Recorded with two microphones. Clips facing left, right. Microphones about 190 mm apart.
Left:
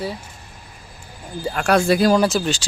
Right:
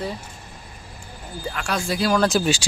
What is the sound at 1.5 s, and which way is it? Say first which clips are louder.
Speech: left 9 dB; 65° left (ahead or behind).